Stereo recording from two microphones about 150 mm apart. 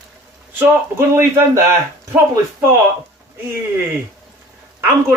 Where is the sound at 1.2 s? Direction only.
15° right (ahead or behind).